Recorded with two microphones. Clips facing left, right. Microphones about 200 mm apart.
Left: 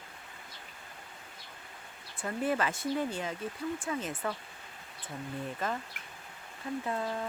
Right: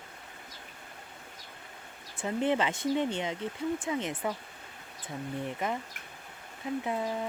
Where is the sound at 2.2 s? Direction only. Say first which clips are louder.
Right 3 dB; 20° right (ahead or behind).